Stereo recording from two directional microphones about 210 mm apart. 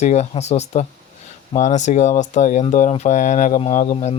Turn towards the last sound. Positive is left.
turn(degrees=35)  # may be behind; listen again after turning